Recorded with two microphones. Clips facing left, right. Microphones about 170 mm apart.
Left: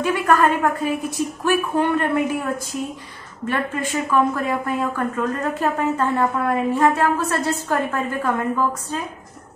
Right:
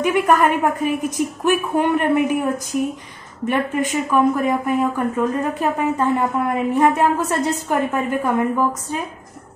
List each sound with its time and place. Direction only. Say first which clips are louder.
0.0 s speech: right 2 dB; 15° right (ahead or behind)